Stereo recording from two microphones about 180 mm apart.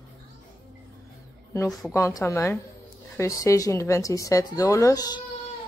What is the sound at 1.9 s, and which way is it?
A woman's voice, 15° left (ahead or behind).